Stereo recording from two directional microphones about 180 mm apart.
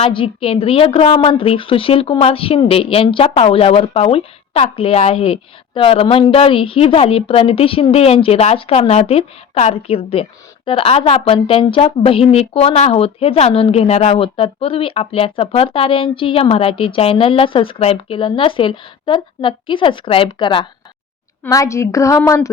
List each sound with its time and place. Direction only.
0.0 s a woman's voice: 30° left (ahead or behind)
21.4 s a woman's voice: 15° left (ahead or behind)